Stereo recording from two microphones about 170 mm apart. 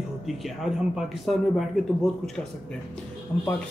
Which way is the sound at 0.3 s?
Centre (ahead or behind).